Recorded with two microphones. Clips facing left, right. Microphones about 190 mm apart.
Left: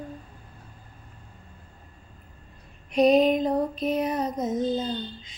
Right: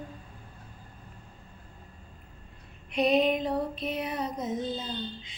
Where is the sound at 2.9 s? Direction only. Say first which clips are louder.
Left 6 dB; 40° left (ahead or behind).